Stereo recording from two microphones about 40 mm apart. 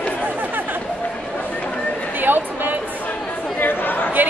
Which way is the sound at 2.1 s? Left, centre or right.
Right.